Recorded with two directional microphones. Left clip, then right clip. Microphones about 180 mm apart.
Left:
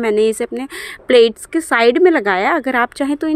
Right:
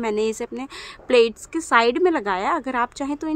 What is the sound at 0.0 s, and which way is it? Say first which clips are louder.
A woman's voice: left 8 dB; 25° left (ahead or behind).